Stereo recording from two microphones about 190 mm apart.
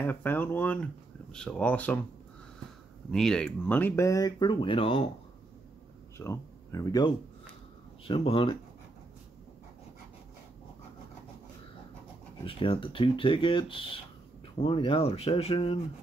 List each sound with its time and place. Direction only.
0.0 s speech: 10° left (ahead or behind)
3.1 s speech: 5° left (ahead or behind); by 5.1 s 30° left (ahead or behind)
6.1 s speech: 15° left (ahead or behind)
8.0 s speech: 30° left (ahead or behind)
12.4 s speech: 30° left (ahead or behind)